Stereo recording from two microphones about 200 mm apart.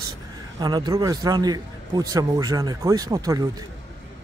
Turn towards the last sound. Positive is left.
turn(degrees=-20)  # may be behind; listen again after turning